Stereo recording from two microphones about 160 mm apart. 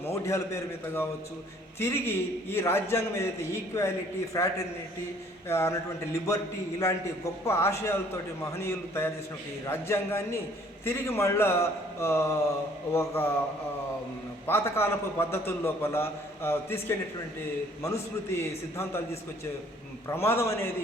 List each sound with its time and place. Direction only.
0.0 s a man's voice: 15° left (ahead or behind)
14.4 s a man's voice: 15° left (ahead or behind)
20.1 s a man's voice: 15° left (ahead or behind)